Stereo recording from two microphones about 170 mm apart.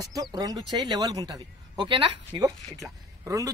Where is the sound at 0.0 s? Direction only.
20° right (ahead or behind).